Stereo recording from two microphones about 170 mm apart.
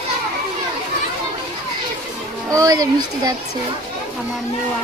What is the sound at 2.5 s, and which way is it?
Speech, 20° right (ahead or behind).